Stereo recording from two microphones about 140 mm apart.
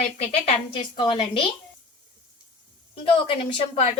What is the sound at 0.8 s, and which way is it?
Speech, 35° left (ahead or behind).